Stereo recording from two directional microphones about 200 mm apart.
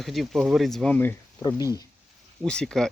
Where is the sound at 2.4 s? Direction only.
5° left (ahead or behind).